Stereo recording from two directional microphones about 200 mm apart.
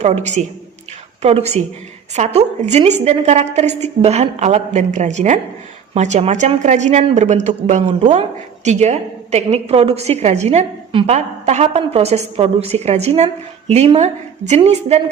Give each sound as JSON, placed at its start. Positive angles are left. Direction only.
{"t": 0.0, "sound": "a woman's voice", "side_deg": -35}